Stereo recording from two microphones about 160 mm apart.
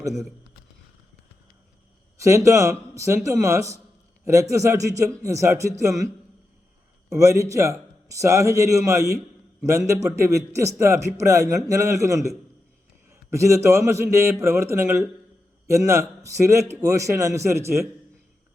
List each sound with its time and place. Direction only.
2.1 s a man's voice: 20° right (ahead or behind)
7.1 s a man's voice: 20° right (ahead or behind)